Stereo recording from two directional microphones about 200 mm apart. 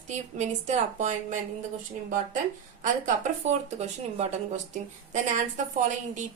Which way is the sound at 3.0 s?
35° right (ahead or behind).